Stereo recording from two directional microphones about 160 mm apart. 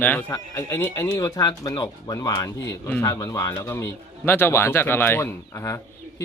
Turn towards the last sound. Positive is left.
turn(degrees=15)  # may be behind; listen again after turning